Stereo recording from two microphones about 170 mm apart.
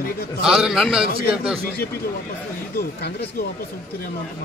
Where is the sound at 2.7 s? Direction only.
65° left (ahead or behind).